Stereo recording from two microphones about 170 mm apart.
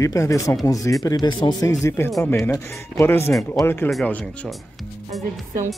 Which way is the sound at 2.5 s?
15° left (ahead or behind).